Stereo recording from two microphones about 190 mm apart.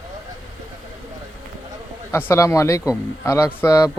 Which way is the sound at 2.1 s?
10° left (ahead or behind).